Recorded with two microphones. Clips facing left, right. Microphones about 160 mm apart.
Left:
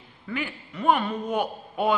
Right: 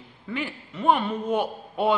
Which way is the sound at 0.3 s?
25° right (ahead or behind).